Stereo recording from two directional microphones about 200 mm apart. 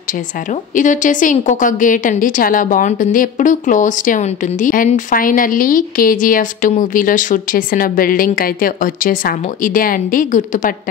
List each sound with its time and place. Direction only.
0.5 s a woman's voice: 40° left (ahead or behind)